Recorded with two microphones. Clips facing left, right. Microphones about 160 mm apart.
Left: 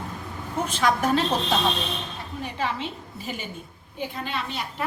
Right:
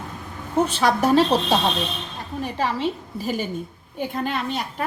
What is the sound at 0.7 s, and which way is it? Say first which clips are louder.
A woman's voice: right 2 dB; 35° right (ahead or behind).